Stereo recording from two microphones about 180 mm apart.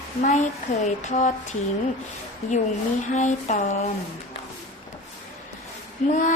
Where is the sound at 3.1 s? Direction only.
40° left (ahead or behind).